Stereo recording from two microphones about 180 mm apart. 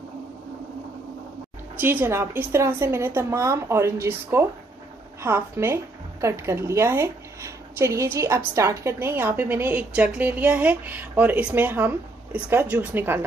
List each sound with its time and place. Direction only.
1.8 s a woman's voice: 10° right (ahead or behind)